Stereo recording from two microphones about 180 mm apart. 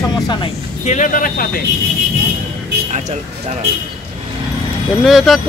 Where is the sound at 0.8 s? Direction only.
45° left (ahead or behind).